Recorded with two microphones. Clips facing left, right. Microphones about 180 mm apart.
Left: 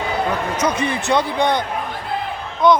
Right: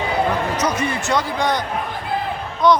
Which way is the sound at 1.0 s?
60° left (ahead or behind).